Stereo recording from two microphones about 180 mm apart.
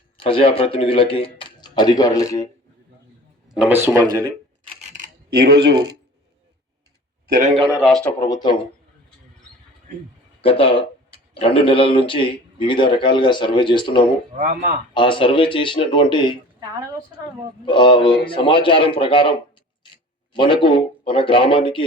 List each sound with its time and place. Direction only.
0.2 s speech: 30° left (ahead or behind)
3.5 s speech: 10° right (ahead or behind)
5.3 s speech: 60° right (ahead or behind)
7.8 s speech: centre (ahead or behind)
8.2 s speech: 20° left (ahead or behind)
10.4 s speech: 30° left (ahead or behind)
14.3 s speech: 45° right (ahead or behind)
14.9 s speech: 30° left (ahead or behind)
17.7 s speech: 25° left (ahead or behind)
20.3 s speech: 25° left (ahead or behind)